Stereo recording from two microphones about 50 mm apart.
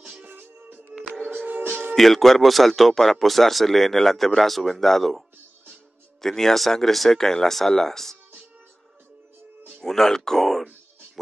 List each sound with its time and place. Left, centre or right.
0.3 s music: right
2.0 s speech: centre
6.2 s speech: centre
9.8 s speech: centre